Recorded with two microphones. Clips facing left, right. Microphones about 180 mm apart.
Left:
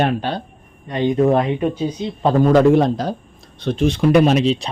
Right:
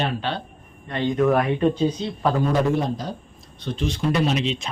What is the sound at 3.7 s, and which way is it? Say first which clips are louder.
Speech: left 9 dB; 60° left (ahead or behind).